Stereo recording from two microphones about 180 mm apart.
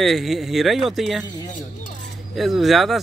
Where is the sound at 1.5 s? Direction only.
45° left (ahead or behind).